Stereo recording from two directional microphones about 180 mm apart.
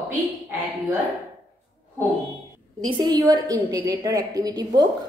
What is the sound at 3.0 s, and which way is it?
A woman's voice, 20° right (ahead or behind).